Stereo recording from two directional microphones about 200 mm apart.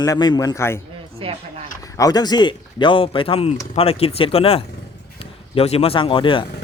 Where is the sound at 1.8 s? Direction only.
15° left (ahead or behind).